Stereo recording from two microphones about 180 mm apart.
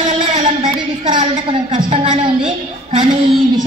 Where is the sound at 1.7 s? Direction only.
40° right (ahead or behind).